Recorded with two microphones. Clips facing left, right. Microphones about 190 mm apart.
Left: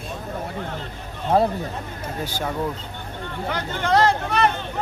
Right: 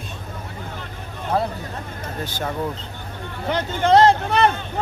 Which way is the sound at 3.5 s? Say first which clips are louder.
Right 5 dB; 25° right (ahead or behind).